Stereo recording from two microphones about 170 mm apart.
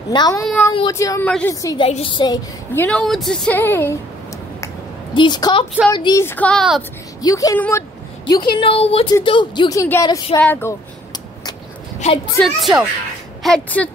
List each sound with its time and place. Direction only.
0.1 s a woman's voice: 25° left (ahead or behind)
1.9 s a woman's voice: 35° left (ahead or behind)
2.8 s speech: centre (ahead or behind)
5.1 s a woman's voice: 25° left (ahead or behind)
6.2 s a woman's voice: 10° left (ahead or behind)
7.2 s a woman's voice: 20° left (ahead or behind)
12.0 s a woman's voice: 40° left (ahead or behind)
12.4 s a woman's voice: centre (ahead or behind)